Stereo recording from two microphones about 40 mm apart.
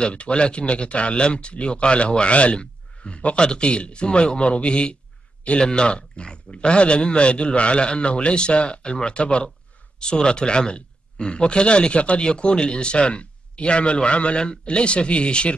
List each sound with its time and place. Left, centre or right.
0.0 s speech: left